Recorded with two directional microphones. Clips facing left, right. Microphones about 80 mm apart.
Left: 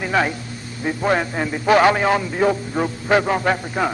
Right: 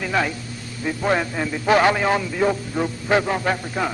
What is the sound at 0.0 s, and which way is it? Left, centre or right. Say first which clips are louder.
A man's voice: left 3 dB; left.